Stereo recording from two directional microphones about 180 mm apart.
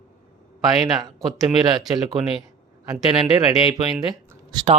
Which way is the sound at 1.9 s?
25° right (ahead or behind).